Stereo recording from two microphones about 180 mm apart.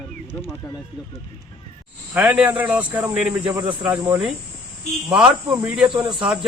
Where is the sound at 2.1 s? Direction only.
10° right (ahead or behind).